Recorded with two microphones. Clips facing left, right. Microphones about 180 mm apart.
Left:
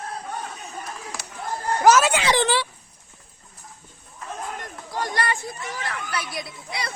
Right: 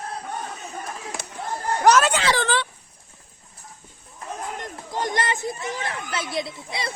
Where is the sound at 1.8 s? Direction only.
5° left (ahead or behind).